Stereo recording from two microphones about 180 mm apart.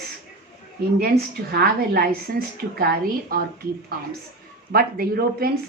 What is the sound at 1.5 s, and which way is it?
A woman's voice, 60° right (ahead or behind).